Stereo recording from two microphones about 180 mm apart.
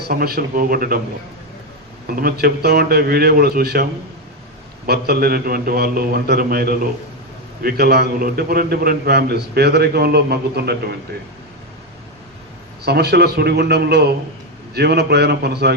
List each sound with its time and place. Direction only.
0.0 s a man's voice: 60° right (ahead or behind)
2.0 s a man's voice: 55° right (ahead or behind)
4.9 s a man's voice: 60° right (ahead or behind)
12.8 s a man's voice: 65° right (ahead or behind)